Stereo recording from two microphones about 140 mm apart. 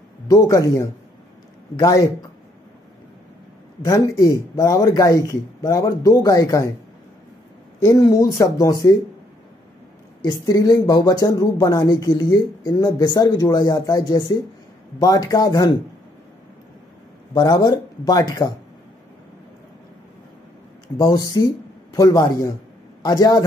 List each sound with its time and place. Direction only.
0.3 s speech: 25° left (ahead or behind)
3.8 s speech: 20° left (ahead or behind)
7.8 s speech: 25° left (ahead or behind)
10.4 s speech: 25° left (ahead or behind)
17.3 s speech: 30° left (ahead or behind)
21.0 s speech: 30° left (ahead or behind)